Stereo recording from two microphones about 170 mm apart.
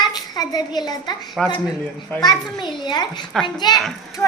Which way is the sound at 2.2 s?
25° left (ahead or behind).